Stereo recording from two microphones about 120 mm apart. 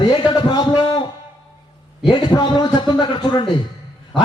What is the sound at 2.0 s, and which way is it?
A man's voice, 40° left (ahead or behind).